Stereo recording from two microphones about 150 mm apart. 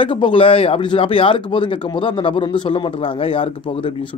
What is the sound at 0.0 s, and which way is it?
Speech, 35° left (ahead or behind).